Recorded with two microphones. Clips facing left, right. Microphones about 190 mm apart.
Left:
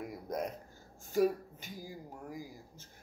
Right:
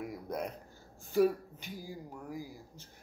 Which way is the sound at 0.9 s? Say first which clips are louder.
Right 2 dB; 45° left (ahead or behind).